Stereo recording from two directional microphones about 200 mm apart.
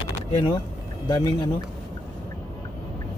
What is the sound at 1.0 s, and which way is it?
Speech, 20° left (ahead or behind).